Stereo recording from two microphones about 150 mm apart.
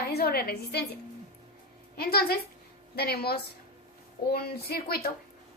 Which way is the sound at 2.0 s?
90° left.